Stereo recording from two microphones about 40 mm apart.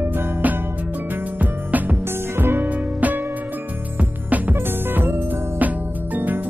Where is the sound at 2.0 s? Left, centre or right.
Right.